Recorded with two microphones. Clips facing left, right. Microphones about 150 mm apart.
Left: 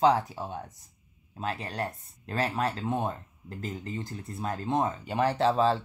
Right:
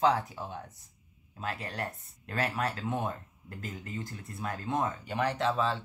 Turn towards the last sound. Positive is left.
turn(degrees=35)  # may be behind; listen again after turning